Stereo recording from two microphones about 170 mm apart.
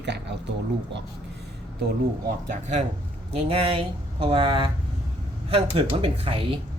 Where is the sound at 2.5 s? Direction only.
45° right (ahead or behind).